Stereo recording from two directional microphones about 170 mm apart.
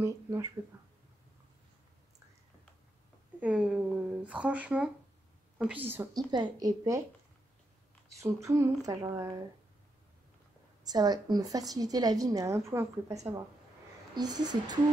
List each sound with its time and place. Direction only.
0.0 s speech: 15° right (ahead or behind)
3.3 s speech: 5° right (ahead or behind)
6.3 s a woman's voice: 25° right (ahead or behind)
8.2 s speech: 15° right (ahead or behind)
10.8 s a woman's voice: 25° right (ahead or behind)